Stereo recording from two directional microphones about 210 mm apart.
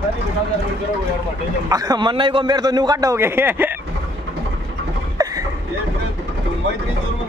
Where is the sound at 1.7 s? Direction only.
15° right (ahead or behind).